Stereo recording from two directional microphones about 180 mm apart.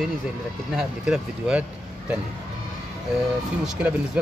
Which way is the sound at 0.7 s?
Centre (ahead or behind).